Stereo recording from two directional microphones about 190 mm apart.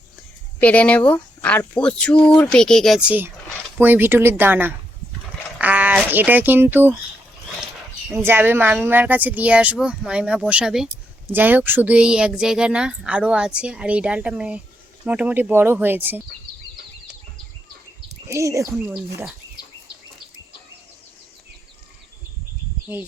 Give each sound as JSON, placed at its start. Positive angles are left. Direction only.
{"t": 0.6, "sound": "speech", "side_deg": 5}
{"t": 5.5, "sound": "a sound", "side_deg": -10}
{"t": 6.1, "sound": "speech", "side_deg": -10}
{"t": 8.1, "sound": "speech", "side_deg": -10}
{"t": 18.3, "sound": "speech", "side_deg": -15}
{"t": 19.6, "sound": "a sound", "side_deg": 20}